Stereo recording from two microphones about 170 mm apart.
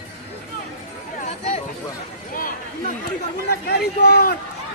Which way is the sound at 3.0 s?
70° left (ahead or behind).